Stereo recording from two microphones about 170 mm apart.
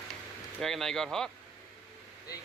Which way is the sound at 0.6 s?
Centre (ahead or behind).